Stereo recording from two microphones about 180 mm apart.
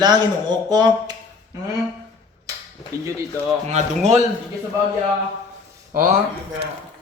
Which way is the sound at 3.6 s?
40° right (ahead or behind).